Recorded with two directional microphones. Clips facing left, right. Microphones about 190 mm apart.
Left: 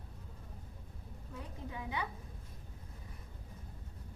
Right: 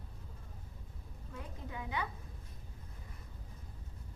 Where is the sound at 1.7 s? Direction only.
20° left (ahead or behind).